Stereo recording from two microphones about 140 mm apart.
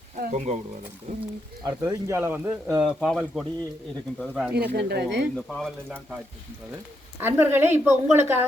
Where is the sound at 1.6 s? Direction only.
20° right (ahead or behind).